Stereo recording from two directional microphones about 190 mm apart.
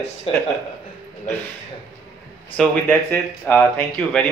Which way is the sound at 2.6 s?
5° left (ahead or behind).